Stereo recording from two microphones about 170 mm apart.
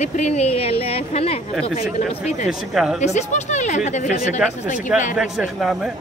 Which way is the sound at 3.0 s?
45° left (ahead or behind).